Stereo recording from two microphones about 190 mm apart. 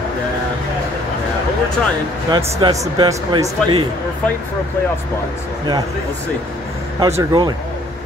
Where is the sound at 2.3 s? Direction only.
25° right (ahead or behind).